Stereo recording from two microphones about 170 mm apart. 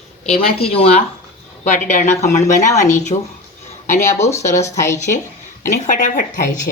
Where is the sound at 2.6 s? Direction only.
20° left (ahead or behind).